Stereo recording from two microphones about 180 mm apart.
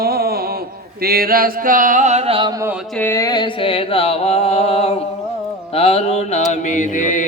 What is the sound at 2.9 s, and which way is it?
Mantra, 10° left (ahead or behind).